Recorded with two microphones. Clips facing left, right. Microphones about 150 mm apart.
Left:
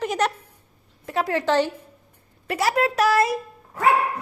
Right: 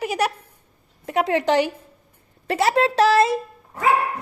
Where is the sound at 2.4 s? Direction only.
30° right (ahead or behind).